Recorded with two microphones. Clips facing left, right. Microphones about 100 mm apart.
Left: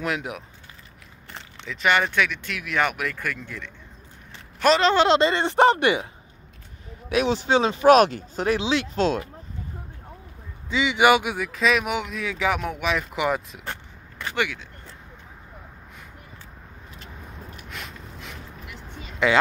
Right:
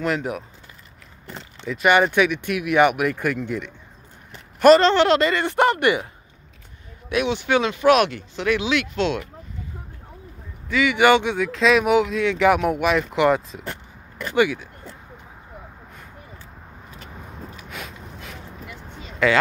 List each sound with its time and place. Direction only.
0.0 s speech: centre (ahead or behind)
1.6 s a man's voice: 10° right (ahead or behind)
4.9 s speech: 25° left (ahead or behind)
7.2 s speech: 40° left (ahead or behind)
10.7 s speech: 20° left (ahead or behind); by 13.7 s 5° left (ahead or behind)
14.3 s speech: 10° right (ahead or behind)
17.6 s a sound: centre (ahead or behind)
19.2 s speech: 20° left (ahead or behind)